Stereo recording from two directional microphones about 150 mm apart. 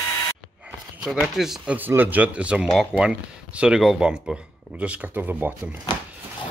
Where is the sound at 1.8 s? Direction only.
10° right (ahead or behind).